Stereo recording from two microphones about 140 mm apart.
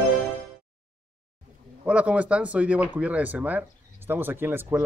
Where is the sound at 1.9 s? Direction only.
10° right (ahead or behind).